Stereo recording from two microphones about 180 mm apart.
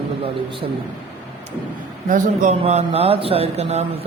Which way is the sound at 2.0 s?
45° right (ahead or behind).